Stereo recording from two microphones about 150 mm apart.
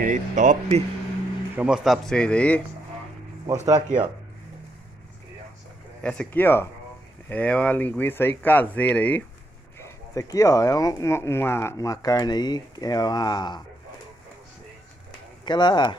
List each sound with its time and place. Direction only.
0.0 s speech: 55° right (ahead or behind)
1.6 s a man's voice: 5° right (ahead or behind)
3.6 s speech: 30° right (ahead or behind)
6.0 s speech: 10° left (ahead or behind)
9.8 s speech: 20° left (ahead or behind)
15.4 s speech: 30° left (ahead or behind)